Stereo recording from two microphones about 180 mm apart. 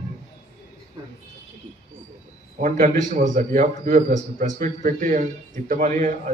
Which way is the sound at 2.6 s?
45° right (ahead or behind).